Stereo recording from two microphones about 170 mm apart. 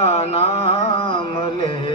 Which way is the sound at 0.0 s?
35° left (ahead or behind).